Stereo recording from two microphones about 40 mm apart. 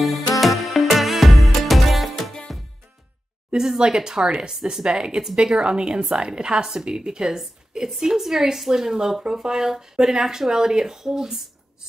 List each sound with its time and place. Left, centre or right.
0.0 s music: centre
3.5 s speech: centre